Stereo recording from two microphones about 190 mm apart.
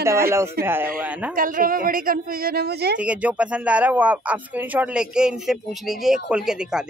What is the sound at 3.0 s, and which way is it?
Speech, 5° right (ahead or behind).